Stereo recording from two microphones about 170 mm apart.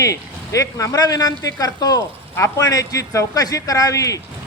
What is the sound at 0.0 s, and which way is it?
A man's voice, 20° left (ahead or behind).